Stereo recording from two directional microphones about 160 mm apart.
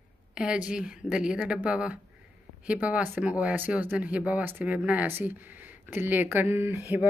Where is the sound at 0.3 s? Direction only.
5° right (ahead or behind).